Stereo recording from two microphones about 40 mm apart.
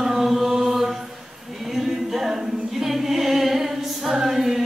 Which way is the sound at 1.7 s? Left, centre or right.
Centre.